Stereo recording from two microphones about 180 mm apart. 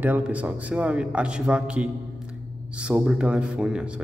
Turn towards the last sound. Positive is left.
turn(degrees=-5)  # may be behind; listen again after turning